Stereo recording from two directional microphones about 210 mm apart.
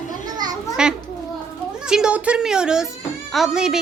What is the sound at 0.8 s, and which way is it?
A woman's voice, 5° right (ahead or behind).